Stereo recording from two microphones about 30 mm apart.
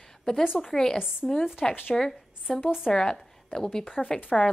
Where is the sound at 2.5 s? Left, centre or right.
Centre.